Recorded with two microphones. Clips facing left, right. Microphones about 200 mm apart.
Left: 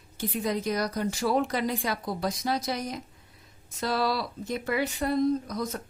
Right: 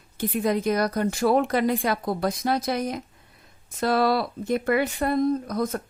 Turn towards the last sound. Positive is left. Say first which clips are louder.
# right 4 dB
turn(degrees=-55)  # may be behind; listen again after turning